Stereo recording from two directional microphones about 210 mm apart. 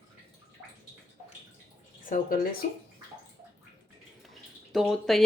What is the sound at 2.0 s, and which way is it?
Speech, 40° left (ahead or behind).